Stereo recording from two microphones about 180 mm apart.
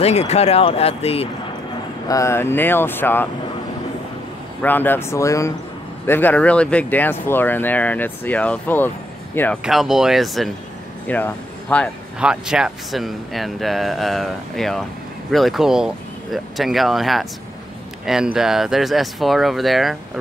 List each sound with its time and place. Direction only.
0.0 s speech: 35° left (ahead or behind)
2.0 s speech: 15° left (ahead or behind)
4.6 s speech: 10° left (ahead or behind)
9.6 s speech: centre (ahead or behind)
12.2 s speech: 5° right (ahead or behind)